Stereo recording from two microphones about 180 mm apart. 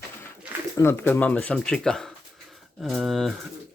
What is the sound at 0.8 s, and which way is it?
Speech, 15° left (ahead or behind).